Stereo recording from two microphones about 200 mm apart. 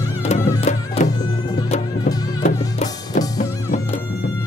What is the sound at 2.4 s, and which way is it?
Music, 35° left (ahead or behind).